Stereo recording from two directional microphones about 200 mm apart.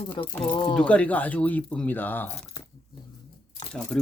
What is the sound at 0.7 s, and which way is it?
Speech, 5° left (ahead or behind).